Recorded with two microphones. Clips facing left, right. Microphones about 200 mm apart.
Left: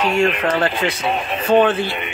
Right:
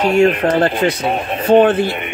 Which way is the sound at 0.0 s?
45° right (ahead or behind).